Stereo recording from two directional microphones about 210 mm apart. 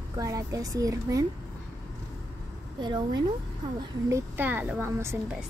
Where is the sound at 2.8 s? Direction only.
20° right (ahead or behind).